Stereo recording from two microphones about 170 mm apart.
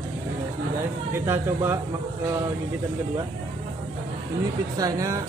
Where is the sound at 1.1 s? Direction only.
15° right (ahead or behind).